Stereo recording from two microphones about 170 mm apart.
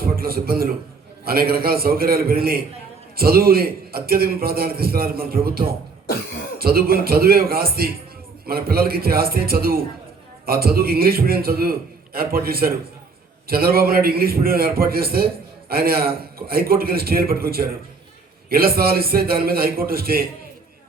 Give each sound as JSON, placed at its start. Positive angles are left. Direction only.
{"t": 0.0, "sound": "a man's voice", "side_deg": -60}